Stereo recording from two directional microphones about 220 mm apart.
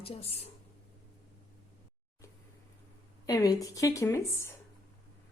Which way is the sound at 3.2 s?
15° left (ahead or behind).